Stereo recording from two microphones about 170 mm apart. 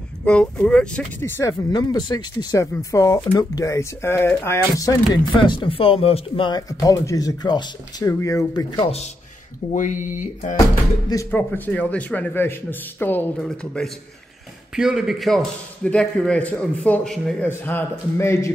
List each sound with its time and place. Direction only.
0.2 s speech: 5° left (ahead or behind); by 8.9 s 25° left (ahead or behind)
9.7 s speech: 50° left (ahead or behind)
11.2 s a man's voice: 10° left (ahead or behind)